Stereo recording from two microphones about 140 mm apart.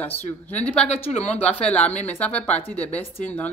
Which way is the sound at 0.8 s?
45° left (ahead or behind).